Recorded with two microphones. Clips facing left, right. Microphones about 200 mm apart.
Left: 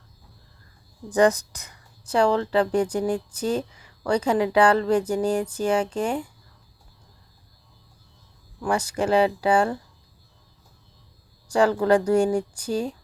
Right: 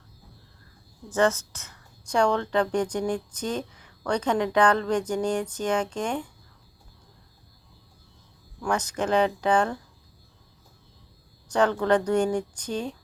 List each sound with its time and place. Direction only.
1.1 s speech: 15° left (ahead or behind)
8.6 s speech: 10° left (ahead or behind)
11.4 s speech: 10° left (ahead or behind)